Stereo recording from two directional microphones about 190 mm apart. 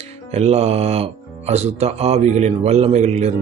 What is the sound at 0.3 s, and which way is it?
Speech, 35° right (ahead or behind).